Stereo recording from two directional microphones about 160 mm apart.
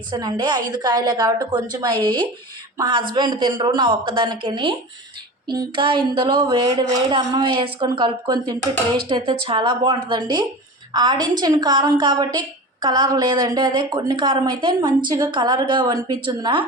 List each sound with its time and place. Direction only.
0.1 s a woman's voice: 25° right (ahead or behind)